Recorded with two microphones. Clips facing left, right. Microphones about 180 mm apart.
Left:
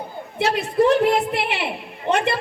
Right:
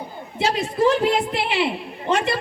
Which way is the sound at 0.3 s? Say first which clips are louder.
Left 2 dB; 60° left (ahead or behind).